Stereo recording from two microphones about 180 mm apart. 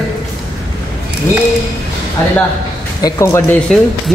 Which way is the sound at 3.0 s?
15° left (ahead or behind).